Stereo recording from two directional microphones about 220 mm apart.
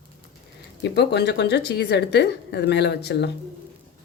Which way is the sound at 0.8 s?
50° left (ahead or behind).